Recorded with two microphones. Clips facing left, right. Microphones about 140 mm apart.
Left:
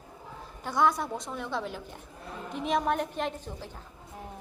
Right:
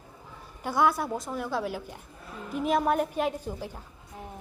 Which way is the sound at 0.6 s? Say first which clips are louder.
Right 1 dB; 5° right (ahead or behind).